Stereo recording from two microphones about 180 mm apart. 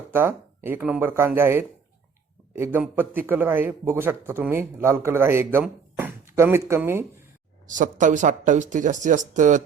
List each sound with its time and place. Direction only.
0.1 s a man's voice: 10° right (ahead or behind)
7.7 s speech: 45° right (ahead or behind)